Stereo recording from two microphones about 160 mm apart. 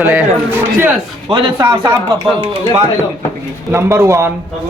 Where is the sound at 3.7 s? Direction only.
15° right (ahead or behind).